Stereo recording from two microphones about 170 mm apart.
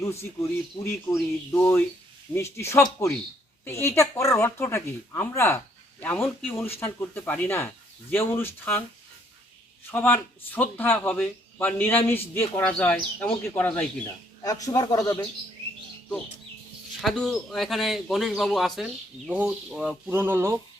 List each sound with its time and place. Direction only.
0.0 s a man's voice: 15° left (ahead or behind)
9.9 s a man's voice: 10° left (ahead or behind)
14.4 s speech: 20° left (ahead or behind)
17.0 s speech: centre (ahead or behind)
20.1 s a sound: 10° right (ahead or behind)